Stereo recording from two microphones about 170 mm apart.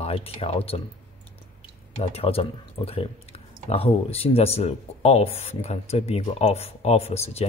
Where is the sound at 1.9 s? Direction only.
35° left (ahead or behind).